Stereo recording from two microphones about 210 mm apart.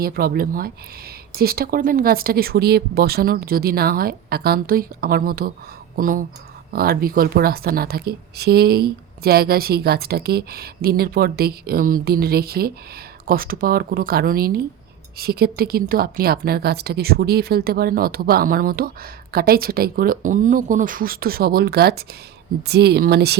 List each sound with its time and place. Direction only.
0.0 s a woman's voice: 45° right (ahead or behind)